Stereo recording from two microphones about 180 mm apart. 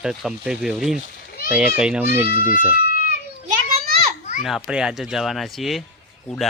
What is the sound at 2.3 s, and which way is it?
Speech, 50° left (ahead or behind).